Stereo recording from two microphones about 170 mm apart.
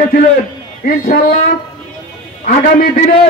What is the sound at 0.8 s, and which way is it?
Speech, 60° left (ahead or behind).